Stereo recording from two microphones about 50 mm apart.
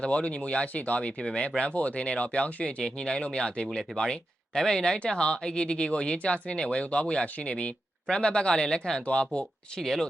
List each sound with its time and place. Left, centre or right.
0.0 s speech: left
9.8 s speech: centre